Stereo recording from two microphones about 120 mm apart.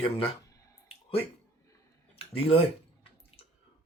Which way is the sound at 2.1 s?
50° left (ahead or behind).